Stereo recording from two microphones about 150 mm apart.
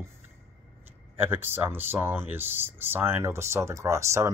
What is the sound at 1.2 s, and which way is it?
Speech, 15° right (ahead or behind).